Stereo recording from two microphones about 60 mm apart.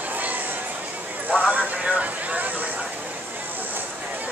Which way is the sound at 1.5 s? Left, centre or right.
Right.